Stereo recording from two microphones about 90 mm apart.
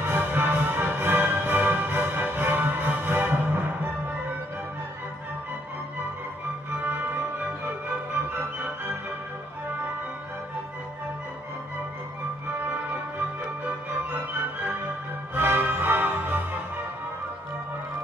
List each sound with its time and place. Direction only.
0.0 s music: 20° right (ahead or behind)
6.8 s music: 20° right (ahead or behind)
15.3 s music: 25° right (ahead or behind)